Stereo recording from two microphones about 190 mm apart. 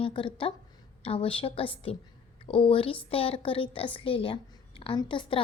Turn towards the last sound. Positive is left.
turn(degrees=25)  # may be behind; listen again after turning